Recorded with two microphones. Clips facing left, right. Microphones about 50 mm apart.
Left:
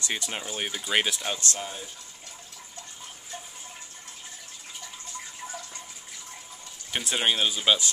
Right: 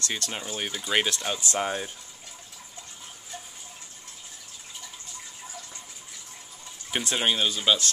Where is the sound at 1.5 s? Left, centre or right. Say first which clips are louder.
Right 8 dB; right.